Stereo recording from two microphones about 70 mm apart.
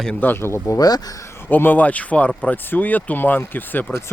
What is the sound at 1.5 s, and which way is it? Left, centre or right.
Speech, left.